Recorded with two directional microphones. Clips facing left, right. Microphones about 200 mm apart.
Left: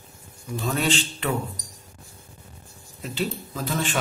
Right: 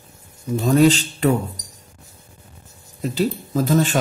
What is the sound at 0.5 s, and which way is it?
Speech, 40° right (ahead or behind).